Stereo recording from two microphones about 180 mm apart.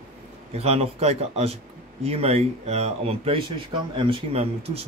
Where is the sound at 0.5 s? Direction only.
35° right (ahead or behind).